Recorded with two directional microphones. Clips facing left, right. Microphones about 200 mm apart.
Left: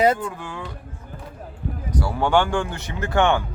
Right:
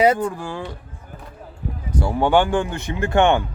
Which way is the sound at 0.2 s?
45° right (ahead or behind).